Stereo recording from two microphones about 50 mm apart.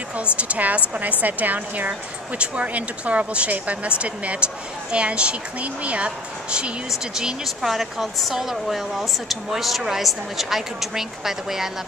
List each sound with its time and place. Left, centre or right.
0.2 s a woman's voice: right
1.9 s speech: right
6.9 s speech: centre